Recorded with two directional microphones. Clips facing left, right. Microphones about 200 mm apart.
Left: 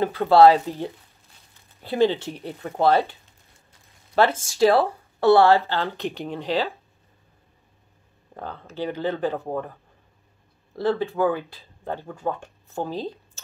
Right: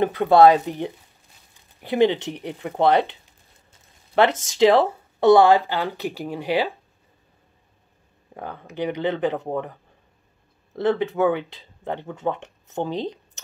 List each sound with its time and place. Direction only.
0.0 s speech: 20° right (ahead or behind)
4.6 s speech: 20° right (ahead or behind)
8.4 s speech: 15° right (ahead or behind)
10.8 s speech: 20° right (ahead or behind)